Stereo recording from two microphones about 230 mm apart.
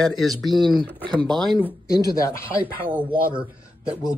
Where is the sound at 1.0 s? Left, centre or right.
Centre.